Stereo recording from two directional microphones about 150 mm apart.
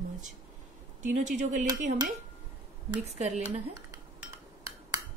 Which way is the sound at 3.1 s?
50° right (ahead or behind).